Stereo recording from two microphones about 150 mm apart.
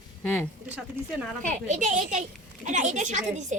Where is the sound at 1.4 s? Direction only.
55° right (ahead or behind).